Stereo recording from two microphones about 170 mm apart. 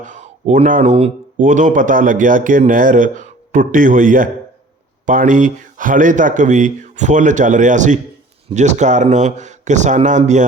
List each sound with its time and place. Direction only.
0.0 s speech: 45° right (ahead or behind)
1.4 s speech: 50° right (ahead or behind)